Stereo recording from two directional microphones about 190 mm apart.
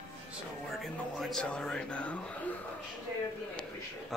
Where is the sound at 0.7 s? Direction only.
Centre (ahead or behind).